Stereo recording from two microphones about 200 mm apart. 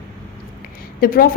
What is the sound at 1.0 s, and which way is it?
Speech, 45° left (ahead or behind).